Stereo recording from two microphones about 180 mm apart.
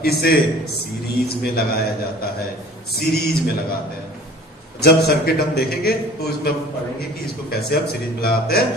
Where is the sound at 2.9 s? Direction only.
60° left (ahead or behind).